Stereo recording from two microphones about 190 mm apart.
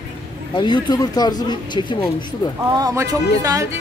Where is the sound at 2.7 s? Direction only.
15° right (ahead or behind).